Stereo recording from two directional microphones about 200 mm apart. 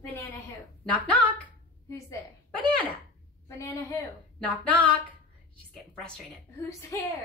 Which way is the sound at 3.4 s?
15° left (ahead or behind).